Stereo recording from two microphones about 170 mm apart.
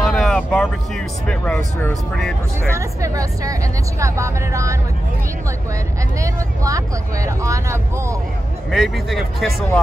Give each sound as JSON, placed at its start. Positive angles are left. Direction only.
{"t": 0.0, "sound": "vehicle", "side_deg": 5}
{"t": 1.3, "sound": "speech", "side_deg": 5}
{"t": 2.7, "sound": "speech", "side_deg": -20}
{"t": 6.2, "sound": "speech", "side_deg": -20}
{"t": 8.6, "sound": "speech", "side_deg": 0}